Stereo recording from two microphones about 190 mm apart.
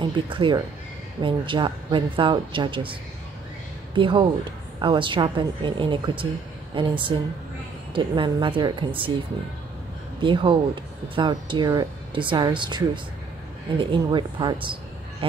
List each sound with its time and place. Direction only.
0.0 s speech: 25° right (ahead or behind)
10.2 s speech: 25° right (ahead or behind)